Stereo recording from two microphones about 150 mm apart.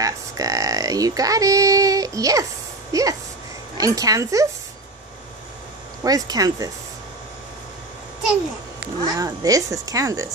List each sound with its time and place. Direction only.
0.0 s speech: 20° right (ahead or behind)
6.0 s speech: 25° right (ahead or behind)
9.0 s speech: 25° right (ahead or behind)